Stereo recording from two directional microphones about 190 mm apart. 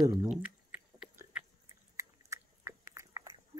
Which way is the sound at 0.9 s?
5° right (ahead or behind).